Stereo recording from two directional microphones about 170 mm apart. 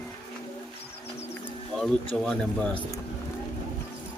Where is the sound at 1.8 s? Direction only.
5° left (ahead or behind).